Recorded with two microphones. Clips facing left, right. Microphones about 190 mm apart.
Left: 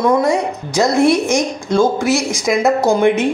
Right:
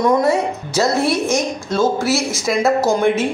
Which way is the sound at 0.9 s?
15° left (ahead or behind).